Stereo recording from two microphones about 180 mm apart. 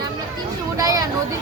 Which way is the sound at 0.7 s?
20° right (ahead or behind).